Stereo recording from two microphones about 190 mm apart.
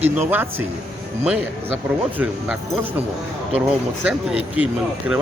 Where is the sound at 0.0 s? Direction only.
10° right (ahead or behind).